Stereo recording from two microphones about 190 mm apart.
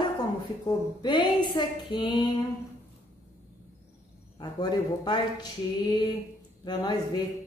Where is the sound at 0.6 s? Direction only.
20° left (ahead or behind).